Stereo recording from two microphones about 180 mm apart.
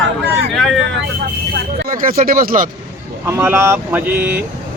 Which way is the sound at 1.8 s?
50° right (ahead or behind).